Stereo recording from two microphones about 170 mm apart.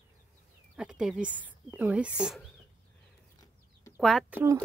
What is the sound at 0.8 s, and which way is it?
Speech, 5° right (ahead or behind).